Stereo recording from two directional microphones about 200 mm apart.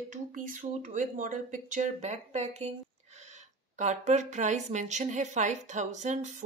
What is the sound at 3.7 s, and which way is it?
Speech, 35° right (ahead or behind).